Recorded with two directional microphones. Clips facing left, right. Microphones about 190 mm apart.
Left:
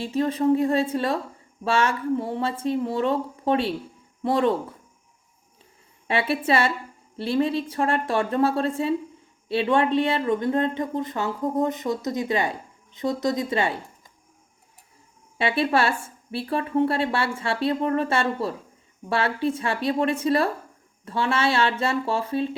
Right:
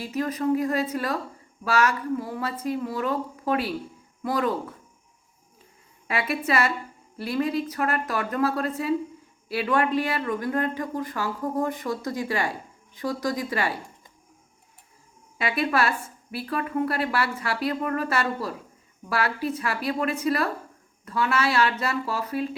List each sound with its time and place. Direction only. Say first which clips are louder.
0.0 s speech: left 4 dB; 30° left (ahead or behind)
6.1 s speech: left 4 dB; 30° left (ahead or behind)
15.4 s speech: left 3 dB; 30° left (ahead or behind)